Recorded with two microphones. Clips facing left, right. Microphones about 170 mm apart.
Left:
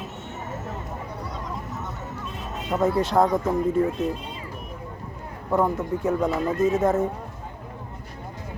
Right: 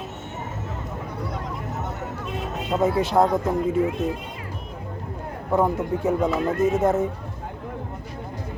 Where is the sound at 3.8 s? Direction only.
65° right (ahead or behind).